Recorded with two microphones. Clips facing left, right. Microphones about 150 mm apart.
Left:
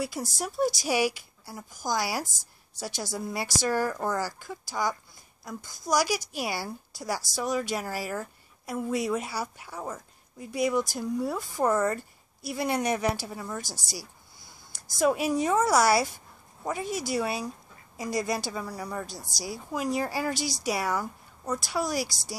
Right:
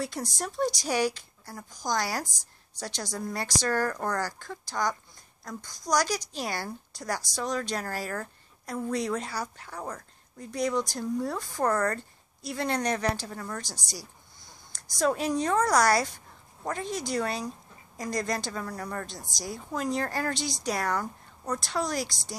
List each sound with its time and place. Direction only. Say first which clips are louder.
0.0 s a woman's voice: left 1 dB; 5° left (ahead or behind)
2.2 s a woman's voice: left 1 dB; 15° right (ahead or behind)
2.8 s a woman's voice: left 1 dB; 10° left (ahead or behind)
13.7 s speech: left 1 dB; 15° right (ahead or behind)
13.9 s a sound: left 2 dB; 10° left (ahead or behind)
15.0 s a woman's voice: left 2 dB; 10° left (ahead or behind)